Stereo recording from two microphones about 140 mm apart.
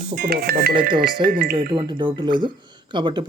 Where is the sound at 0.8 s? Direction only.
35° right (ahead or behind).